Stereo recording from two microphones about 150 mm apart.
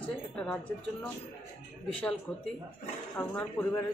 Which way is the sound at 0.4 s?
5° left (ahead or behind).